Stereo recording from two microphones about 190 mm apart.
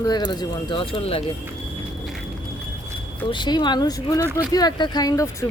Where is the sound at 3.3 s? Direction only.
25° left (ahead or behind).